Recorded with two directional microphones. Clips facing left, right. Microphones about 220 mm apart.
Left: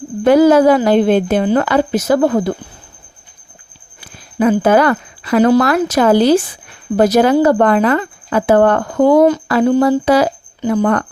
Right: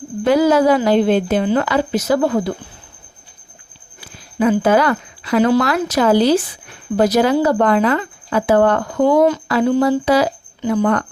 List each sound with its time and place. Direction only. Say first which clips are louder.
0.3 s speech: left 4 dB; 50° left (ahead or behind)
4.4 s speech: left 3 dB; 50° left (ahead or behind)